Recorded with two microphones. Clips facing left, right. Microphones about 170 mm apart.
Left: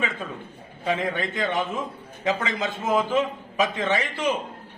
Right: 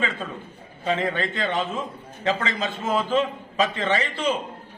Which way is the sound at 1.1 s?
15° left (ahead or behind).